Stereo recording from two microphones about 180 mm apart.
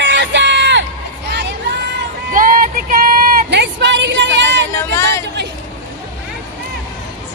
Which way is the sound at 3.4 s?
75° right (ahead or behind).